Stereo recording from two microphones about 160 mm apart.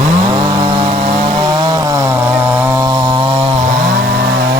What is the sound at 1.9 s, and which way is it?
Chainsaw, 20° right (ahead or behind).